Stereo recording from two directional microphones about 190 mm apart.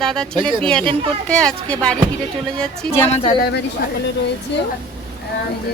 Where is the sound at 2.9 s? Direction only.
35° left (ahead or behind).